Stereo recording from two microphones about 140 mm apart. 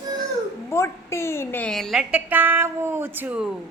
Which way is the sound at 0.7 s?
20° left (ahead or behind).